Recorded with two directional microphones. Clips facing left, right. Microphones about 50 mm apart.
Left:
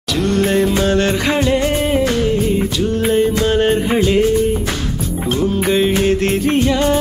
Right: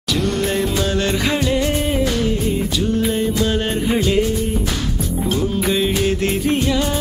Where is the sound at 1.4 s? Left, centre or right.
Left.